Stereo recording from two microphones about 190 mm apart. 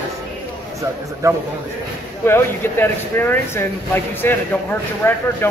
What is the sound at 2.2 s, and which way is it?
Speech, 10° left (ahead or behind).